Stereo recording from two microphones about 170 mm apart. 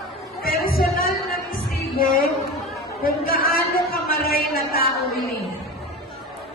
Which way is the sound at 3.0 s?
60° left (ahead or behind).